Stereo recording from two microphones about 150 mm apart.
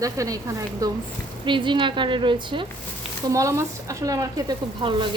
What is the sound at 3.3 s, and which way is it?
Speech, 20° right (ahead or behind).